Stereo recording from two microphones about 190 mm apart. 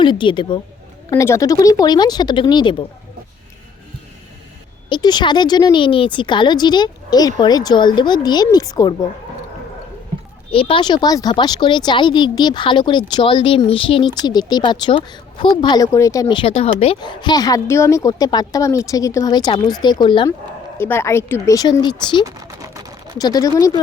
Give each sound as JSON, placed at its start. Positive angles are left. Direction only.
{"t": 0.0, "sound": "speech", "side_deg": 25}
{"t": 1.1, "sound": "speech", "side_deg": 15}
{"t": 4.9, "sound": "speech", "side_deg": 25}
{"t": 10.5, "sound": "speech", "side_deg": 30}
{"t": 16.2, "sound": "speech", "side_deg": 30}
{"t": 20.7, "sound": "speech", "side_deg": 10}
{"t": 22.2, "sound": "typing", "side_deg": -15}
{"t": 23.1, "sound": "speech", "side_deg": 20}